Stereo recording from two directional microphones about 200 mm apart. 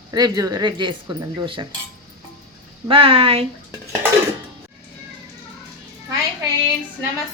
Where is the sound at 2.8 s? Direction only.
25° right (ahead or behind).